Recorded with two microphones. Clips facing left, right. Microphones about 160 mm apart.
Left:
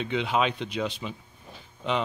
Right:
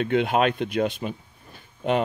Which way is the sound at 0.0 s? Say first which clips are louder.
Right 5 dB; 50° right (ahead or behind).